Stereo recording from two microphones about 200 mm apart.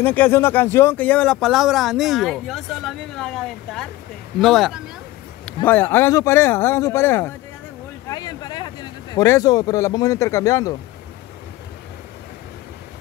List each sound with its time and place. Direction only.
0.0 s a man's voice: 10° left (ahead or behind)